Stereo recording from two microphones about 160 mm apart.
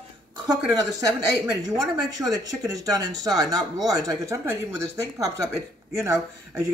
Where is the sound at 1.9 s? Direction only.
25° right (ahead or behind).